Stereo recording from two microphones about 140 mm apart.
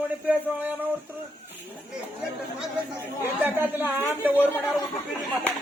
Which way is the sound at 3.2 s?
15° right (ahead or behind).